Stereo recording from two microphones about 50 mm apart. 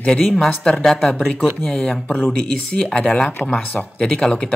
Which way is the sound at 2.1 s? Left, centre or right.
Left.